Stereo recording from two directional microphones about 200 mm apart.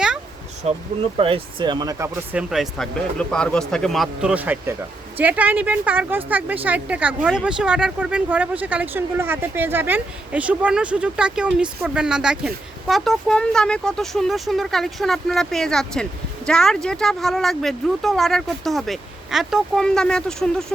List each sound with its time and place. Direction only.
0.6 s speech: 30° right (ahead or behind); by 2.4 s 15° right (ahead or behind)
2.5 s speech: centre (ahead or behind)